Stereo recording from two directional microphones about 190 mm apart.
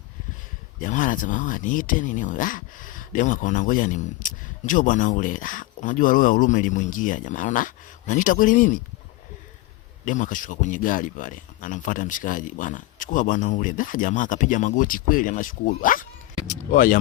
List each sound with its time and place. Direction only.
0.8 s speech: 45° left (ahead or behind)
10.1 s speech: 45° left (ahead or behind)